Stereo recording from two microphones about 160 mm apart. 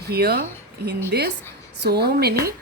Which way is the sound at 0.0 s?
80° right.